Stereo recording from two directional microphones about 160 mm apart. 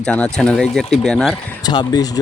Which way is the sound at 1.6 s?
25° left (ahead or behind).